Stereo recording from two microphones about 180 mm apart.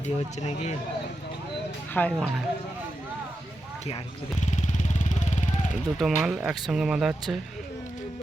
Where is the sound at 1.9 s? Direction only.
5° left (ahead or behind).